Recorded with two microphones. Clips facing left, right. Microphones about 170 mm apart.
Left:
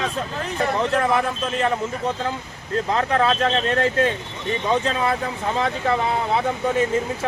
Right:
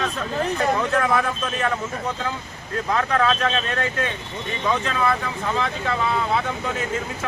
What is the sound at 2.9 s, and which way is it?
A man's voice, 30° left (ahead or behind).